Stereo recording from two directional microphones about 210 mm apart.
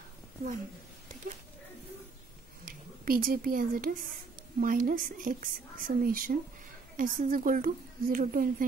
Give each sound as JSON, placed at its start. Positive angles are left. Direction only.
{"t": 2.6, "sound": "a woman's voice", "side_deg": -40}